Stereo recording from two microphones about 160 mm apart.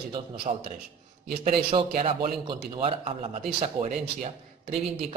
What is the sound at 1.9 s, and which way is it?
Speech, 50° right (ahead or behind).